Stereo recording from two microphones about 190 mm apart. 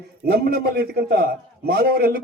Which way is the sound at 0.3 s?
55° right (ahead or behind).